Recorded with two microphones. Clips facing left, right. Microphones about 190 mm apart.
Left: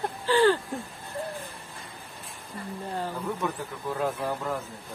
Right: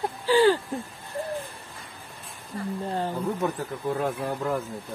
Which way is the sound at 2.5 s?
35° right (ahead or behind).